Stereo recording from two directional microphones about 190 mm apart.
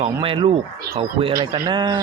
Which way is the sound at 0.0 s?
30° right (ahead or behind).